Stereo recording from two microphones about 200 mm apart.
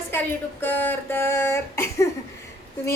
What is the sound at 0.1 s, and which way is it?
A woman's voice, 10° left (ahead or behind).